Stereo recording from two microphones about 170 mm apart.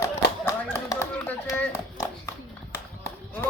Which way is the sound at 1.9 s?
20° left (ahead or behind).